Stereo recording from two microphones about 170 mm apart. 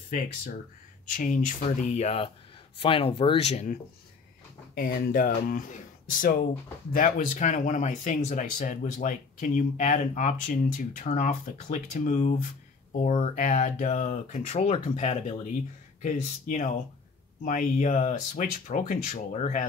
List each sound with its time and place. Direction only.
1.1 s speech: 50° left (ahead or behind)
4.7 s speech: 60° left (ahead or behind); by 19.6 s 45° left (ahead or behind)